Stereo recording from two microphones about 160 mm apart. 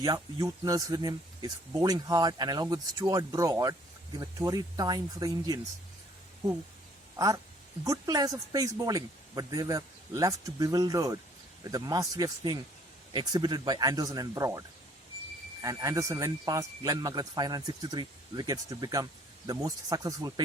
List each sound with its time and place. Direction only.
0.0 s speech: 25° right (ahead or behind)
7.9 s speech: 20° right (ahead or behind)
15.6 s speech: 20° right (ahead or behind)